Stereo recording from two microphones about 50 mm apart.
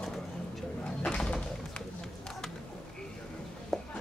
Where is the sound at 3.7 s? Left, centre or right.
Centre.